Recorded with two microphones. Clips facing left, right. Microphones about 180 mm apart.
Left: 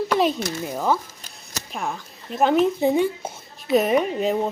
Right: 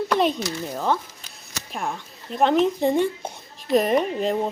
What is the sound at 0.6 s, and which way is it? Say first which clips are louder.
Speech: left 2 dB; 5° left (ahead or behind).